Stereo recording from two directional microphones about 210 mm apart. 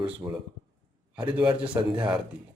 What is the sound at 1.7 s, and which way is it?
Speech, 5° right (ahead or behind).